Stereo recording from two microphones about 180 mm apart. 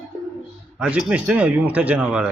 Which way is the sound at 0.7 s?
5° right (ahead or behind).